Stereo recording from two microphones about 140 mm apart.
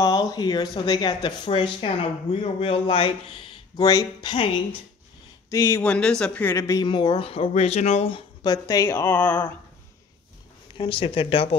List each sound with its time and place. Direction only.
0.0 s speech: 25° left (ahead or behind)
5.5 s speech: 20° left (ahead or behind)
5.9 s a man's voice: 5° left (ahead or behind)
6.5 s speech: 30° left (ahead or behind); by 9.5 s 10° left (ahead or behind)
10.8 s speech: 40° left (ahead or behind)